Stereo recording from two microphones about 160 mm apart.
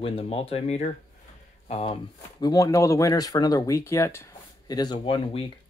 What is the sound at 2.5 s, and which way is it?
Speech, 20° left (ahead or behind).